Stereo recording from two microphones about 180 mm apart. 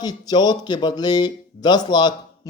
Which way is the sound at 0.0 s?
20° left (ahead or behind).